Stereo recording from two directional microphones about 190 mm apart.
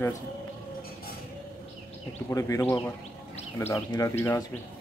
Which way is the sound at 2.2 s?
15° left (ahead or behind).